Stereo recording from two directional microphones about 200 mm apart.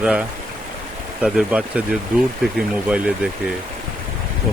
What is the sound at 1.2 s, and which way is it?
Speech, 5° right (ahead or behind).